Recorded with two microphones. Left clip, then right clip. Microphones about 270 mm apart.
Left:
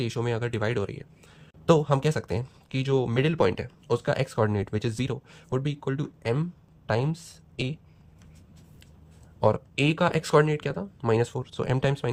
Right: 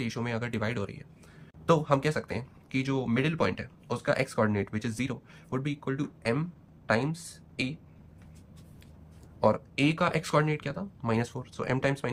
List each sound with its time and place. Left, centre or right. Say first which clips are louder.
0.0 s speech: left 5 dB; left
9.4 s speech: left 2 dB; left